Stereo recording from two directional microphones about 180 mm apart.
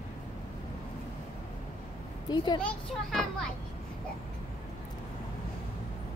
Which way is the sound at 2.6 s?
5° left (ahead or behind).